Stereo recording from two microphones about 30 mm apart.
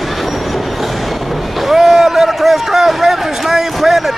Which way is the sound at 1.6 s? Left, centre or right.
Centre.